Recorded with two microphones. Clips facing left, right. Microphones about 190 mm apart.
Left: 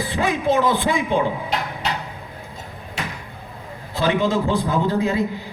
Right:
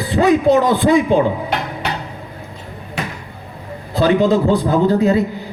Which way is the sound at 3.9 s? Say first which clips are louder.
Right 6 dB; 35° right (ahead or behind).